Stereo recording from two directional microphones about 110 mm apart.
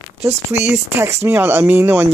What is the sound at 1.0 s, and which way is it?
Speech, 25° right (ahead or behind).